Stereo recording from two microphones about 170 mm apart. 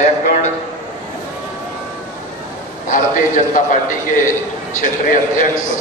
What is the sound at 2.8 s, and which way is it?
A man's voice, 50° left (ahead or behind).